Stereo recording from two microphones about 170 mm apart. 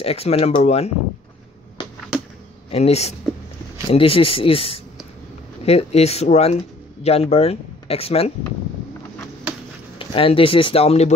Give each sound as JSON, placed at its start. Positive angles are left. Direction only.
{"t": 0.0, "sound": "speech", "side_deg": 35}
{"t": 2.7, "sound": "speech", "side_deg": 40}
{"t": 9.9, "sound": "speech", "side_deg": 30}